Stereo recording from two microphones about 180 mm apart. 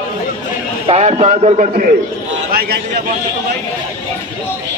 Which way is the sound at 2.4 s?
60° right (ahead or behind).